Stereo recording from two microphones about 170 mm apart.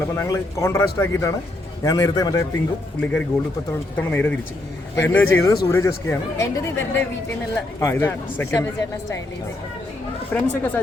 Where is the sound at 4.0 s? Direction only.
10° left (ahead or behind).